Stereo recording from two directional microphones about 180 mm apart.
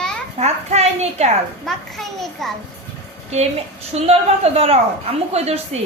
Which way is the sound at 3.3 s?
35° right (ahead or behind).